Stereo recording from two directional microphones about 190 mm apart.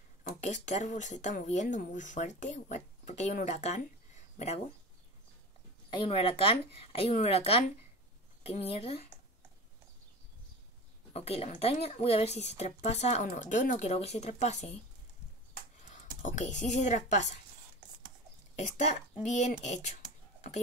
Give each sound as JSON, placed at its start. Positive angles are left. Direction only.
{"t": 0.2, "sound": "speech", "side_deg": 40}
{"t": 5.9, "sound": "speech", "side_deg": 25}
{"t": 11.1, "sound": "speech", "side_deg": 30}
{"t": 15.9, "sound": "speech", "side_deg": 40}
{"t": 18.6, "sound": "speech", "side_deg": 35}